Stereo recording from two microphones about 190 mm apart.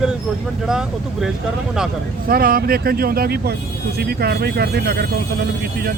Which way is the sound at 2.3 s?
50° right (ahead or behind).